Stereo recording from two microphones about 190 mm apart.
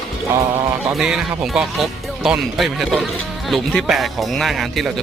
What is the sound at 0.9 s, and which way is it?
Speech, centre (ahead or behind).